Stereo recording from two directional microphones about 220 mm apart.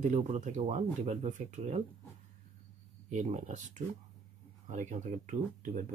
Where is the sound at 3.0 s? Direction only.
35° right (ahead or behind).